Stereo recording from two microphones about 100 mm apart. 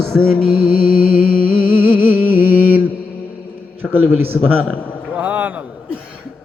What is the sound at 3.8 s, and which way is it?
Music, 20° right (ahead or behind).